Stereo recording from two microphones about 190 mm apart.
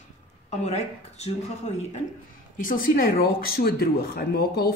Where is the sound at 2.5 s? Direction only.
45° left (ahead or behind).